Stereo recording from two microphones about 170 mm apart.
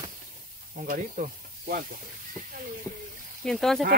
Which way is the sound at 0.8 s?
55° right (ahead or behind).